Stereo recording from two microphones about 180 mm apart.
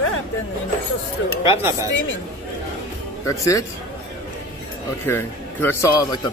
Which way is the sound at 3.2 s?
15° left (ahead or behind).